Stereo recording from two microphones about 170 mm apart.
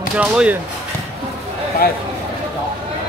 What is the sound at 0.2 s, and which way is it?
Speech, 5° right (ahead or behind).